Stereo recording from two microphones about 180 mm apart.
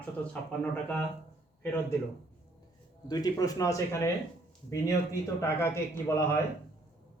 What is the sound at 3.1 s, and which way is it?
Speech, 20° left (ahead or behind).